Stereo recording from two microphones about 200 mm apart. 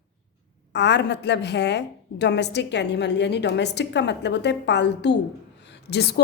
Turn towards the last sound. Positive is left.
turn(degrees=55)  # may be behind; listen again after turning